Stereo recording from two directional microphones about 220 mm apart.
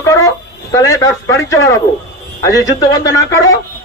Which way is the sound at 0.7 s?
15° left (ahead or behind).